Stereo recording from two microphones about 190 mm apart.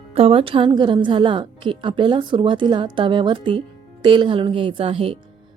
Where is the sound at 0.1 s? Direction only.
30° right (ahead or behind).